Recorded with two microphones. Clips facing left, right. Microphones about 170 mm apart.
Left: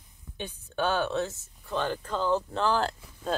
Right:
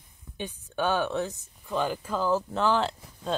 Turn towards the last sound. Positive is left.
turn(degrees=0)  # may be behind; listen again after turning